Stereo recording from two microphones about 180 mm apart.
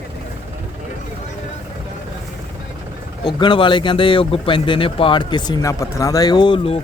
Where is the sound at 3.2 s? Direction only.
25° left (ahead or behind).